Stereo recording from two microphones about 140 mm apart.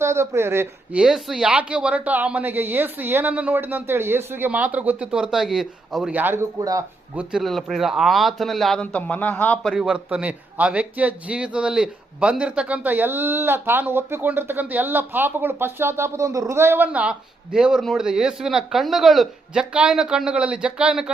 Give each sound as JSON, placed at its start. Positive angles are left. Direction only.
{"t": 0.0, "sound": "a man's voice", "side_deg": -20}
{"t": 1.0, "sound": "a man's voice", "side_deg": -5}
{"t": 7.2, "sound": "speech", "side_deg": -5}
{"t": 9.7, "sound": "a man's voice", "side_deg": -5}